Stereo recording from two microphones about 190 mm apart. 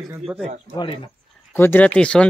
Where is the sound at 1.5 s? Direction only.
10° left (ahead or behind).